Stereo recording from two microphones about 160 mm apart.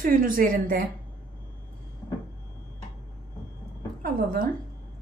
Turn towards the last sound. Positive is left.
turn(degrees=-60)  # may be behind; listen again after turning